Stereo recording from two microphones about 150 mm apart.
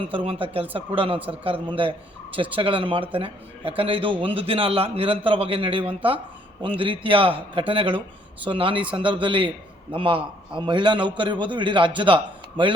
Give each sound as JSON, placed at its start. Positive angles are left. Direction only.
{"t": 0.1, "sound": "a man's voice", "side_deg": -35}